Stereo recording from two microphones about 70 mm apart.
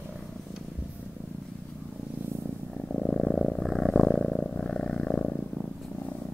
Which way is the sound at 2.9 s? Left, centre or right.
Centre.